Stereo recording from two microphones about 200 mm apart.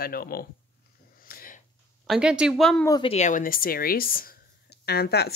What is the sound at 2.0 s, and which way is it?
Speech, 5° right (ahead or behind).